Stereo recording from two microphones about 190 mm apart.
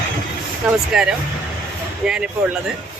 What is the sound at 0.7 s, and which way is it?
Speech, 5° right (ahead or behind).